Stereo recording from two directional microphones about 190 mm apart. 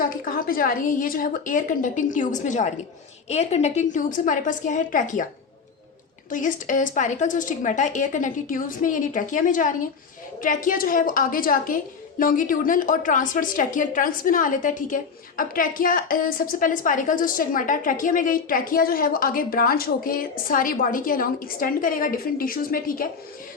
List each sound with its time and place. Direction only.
0.0 s a woman's voice: 50° left (ahead or behind)
6.3 s a woman's voice: 45° left (ahead or behind)